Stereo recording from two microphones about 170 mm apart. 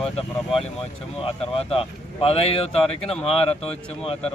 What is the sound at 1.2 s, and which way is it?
Speech, 35° left (ahead or behind).